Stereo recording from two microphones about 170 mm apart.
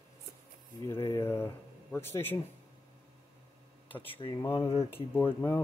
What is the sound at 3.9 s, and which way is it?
Speech, 10° left (ahead or behind).